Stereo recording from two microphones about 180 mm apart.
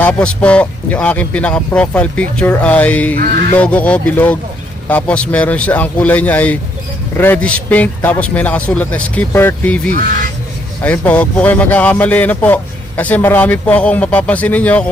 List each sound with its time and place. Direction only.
0.0 s speech: 5° left (ahead or behind)
9.9 s speech: 50° right (ahead or behind)
10.8 s speech: 10° left (ahead or behind)